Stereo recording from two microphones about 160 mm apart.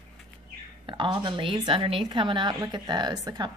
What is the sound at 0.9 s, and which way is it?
A woman's voice, 30° right (ahead or behind).